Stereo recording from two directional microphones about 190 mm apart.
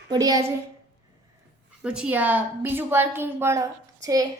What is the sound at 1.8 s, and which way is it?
A woman's voice, 5° right (ahead or behind).